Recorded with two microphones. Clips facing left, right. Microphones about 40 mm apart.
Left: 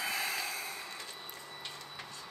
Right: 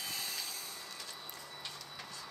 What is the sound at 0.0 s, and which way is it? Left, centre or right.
Vehicle, left.